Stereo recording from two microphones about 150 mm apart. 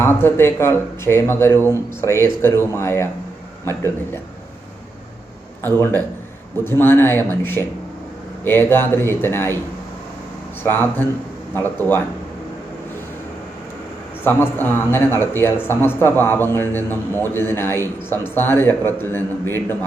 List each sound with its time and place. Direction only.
0.0 s a man's voice: 15° left (ahead or behind)
5.6 s a man's voice: 15° left (ahead or behind)
10.6 s a man's voice: 15° left (ahead or behind)
14.3 s a man's voice: 15° left (ahead or behind)